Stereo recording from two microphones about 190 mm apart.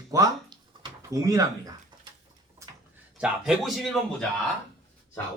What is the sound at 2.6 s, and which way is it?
Speech, 10° right (ahead or behind).